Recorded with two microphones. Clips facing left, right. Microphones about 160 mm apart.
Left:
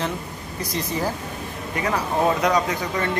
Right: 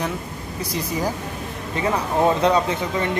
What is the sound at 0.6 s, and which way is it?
Speech, 10° right (ahead or behind).